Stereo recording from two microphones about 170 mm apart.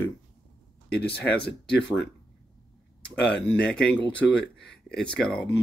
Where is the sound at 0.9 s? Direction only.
70° left (ahead or behind).